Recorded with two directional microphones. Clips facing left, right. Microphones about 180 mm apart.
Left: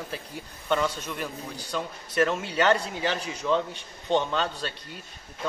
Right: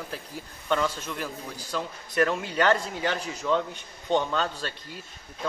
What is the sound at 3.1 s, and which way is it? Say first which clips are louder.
Speech: even; 15° left (ahead or behind).